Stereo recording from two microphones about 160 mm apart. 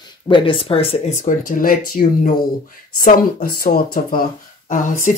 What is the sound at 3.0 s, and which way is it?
Speech, 60° left (ahead or behind).